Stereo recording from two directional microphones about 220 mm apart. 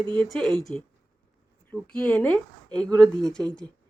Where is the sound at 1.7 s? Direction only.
5° left (ahead or behind).